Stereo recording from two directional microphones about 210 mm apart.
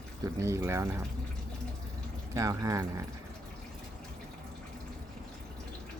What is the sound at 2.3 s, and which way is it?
Speech, 15° right (ahead or behind).